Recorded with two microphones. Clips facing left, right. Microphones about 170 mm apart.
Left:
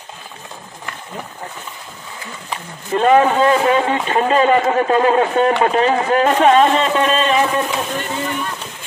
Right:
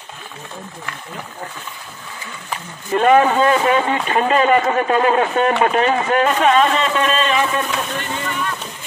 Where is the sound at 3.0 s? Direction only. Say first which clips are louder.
Left 1 dB; 25° left (ahead or behind).